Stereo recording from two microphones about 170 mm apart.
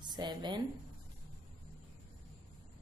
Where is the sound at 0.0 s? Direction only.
25° right (ahead or behind).